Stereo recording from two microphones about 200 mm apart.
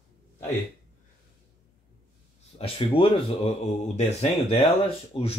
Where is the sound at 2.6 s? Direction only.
30° left (ahead or behind).